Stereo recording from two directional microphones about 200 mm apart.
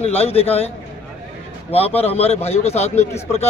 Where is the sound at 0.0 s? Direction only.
30° left (ahead or behind).